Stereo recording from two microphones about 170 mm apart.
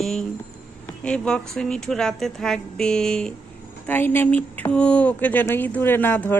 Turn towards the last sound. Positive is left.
turn(degrees=10)  # may be behind; listen again after turning